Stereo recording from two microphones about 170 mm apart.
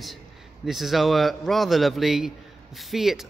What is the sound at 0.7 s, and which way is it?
A man's voice, centre (ahead or behind).